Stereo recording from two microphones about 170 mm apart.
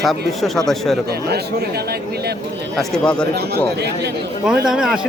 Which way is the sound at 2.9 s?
5° left (ahead or behind).